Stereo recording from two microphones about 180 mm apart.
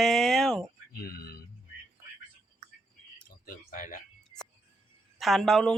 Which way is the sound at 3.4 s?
45° left (ahead or behind).